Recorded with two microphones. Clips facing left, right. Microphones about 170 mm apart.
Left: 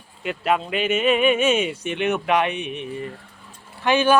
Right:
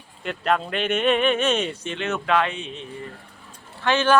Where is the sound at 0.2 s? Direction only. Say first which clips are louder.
Left 1 dB; 5° left (ahead or behind).